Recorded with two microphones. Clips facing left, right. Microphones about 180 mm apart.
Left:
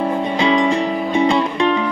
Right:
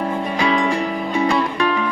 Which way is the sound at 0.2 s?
20° left (ahead or behind).